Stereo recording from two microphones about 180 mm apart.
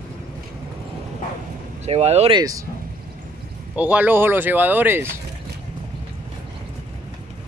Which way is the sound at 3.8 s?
10° right (ahead or behind).